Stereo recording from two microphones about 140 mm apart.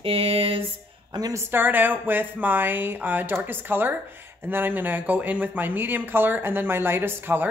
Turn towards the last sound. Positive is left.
turn(degrees=-15)  # may be behind; listen again after turning